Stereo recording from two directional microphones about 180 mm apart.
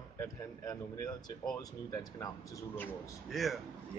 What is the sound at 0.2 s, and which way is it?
Speech, 15° left (ahead or behind).